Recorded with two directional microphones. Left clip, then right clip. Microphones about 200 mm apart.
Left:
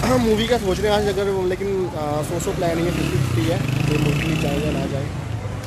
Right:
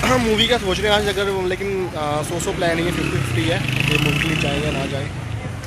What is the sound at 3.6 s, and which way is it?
Speech, 45° left (ahead or behind).